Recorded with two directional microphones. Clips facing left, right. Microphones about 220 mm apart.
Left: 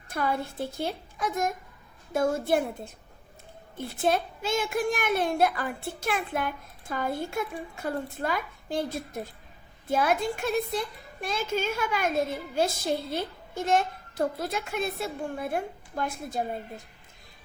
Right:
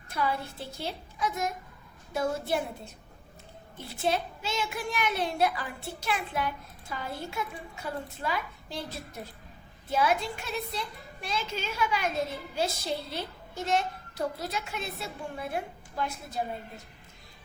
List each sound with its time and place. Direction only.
0.1 s a child's voice: 50° left (ahead or behind)